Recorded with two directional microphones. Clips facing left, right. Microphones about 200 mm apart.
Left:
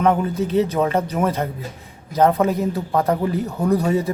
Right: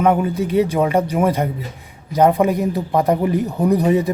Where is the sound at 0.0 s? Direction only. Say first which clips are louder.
Right 2 dB; 10° right (ahead or behind).